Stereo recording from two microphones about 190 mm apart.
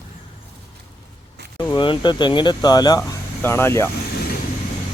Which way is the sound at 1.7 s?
25° left (ahead or behind).